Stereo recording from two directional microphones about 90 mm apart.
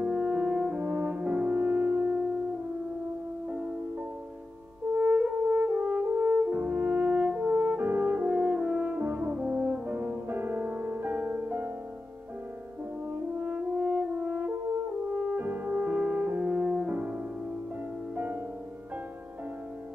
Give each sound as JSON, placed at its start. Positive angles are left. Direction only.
{"t": 0.0, "sound": "french horn", "side_deg": -15}
{"t": 3.4, "sound": "music", "side_deg": -20}
{"t": 4.9, "sound": "french horn", "side_deg": -20}
{"t": 13.4, "sound": "french horn", "side_deg": -15}
{"t": 18.1, "sound": "music", "side_deg": -15}